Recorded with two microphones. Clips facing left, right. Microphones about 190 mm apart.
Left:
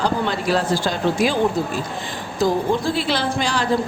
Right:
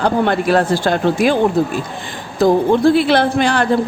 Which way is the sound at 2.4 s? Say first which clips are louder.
Right 7 dB; 60° right (ahead or behind).